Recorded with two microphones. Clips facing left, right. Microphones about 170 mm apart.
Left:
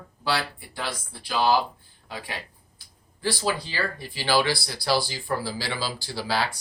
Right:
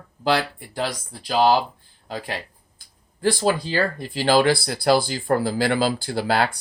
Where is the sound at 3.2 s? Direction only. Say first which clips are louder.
Right 6 dB; 50° right (ahead or behind).